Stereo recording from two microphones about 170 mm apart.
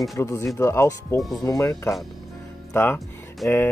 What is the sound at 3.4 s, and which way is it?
Speech, centre (ahead or behind).